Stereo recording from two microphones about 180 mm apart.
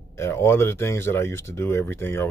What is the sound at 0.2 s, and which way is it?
Speech, 15° left (ahead or behind).